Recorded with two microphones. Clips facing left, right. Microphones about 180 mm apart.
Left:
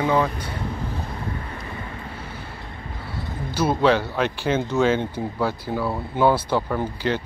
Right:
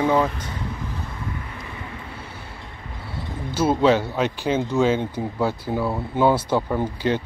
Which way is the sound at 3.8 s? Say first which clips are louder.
Right 1 dB; 20° right (ahead or behind).